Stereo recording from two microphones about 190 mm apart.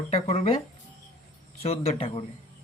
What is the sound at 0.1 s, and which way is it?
Speech, 35° left (ahead or behind).